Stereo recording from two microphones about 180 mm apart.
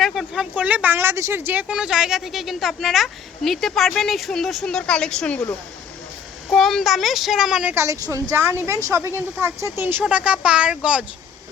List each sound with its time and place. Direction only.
0.0 s speech: centre (ahead or behind)
6.5 s speech: centre (ahead or behind)